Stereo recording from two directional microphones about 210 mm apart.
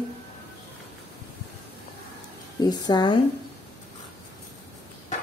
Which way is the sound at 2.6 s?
20° left (ahead or behind).